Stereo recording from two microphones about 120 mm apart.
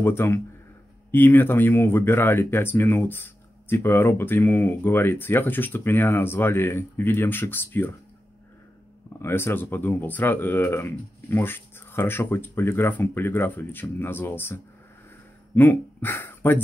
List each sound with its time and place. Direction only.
0.0 s speech: 20° left (ahead or behind)
9.2 s speech: 20° left (ahead or behind)